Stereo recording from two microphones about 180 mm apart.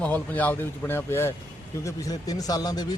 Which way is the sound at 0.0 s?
10° left (ahead or behind).